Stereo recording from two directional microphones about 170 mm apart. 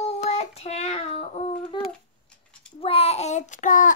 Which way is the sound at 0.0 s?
40° left (ahead or behind).